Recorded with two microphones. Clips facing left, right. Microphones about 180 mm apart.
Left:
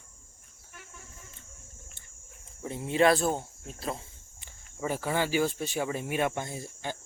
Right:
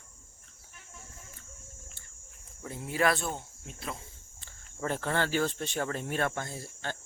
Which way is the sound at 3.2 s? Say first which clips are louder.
Left 7 dB; 35° left (ahead or behind).